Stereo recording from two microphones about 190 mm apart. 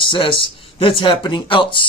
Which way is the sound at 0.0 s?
25° left (ahead or behind).